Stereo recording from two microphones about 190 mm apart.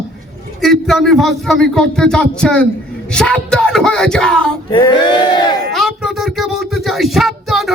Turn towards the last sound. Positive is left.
turn(degrees=0)  # may be behind; listen again after turning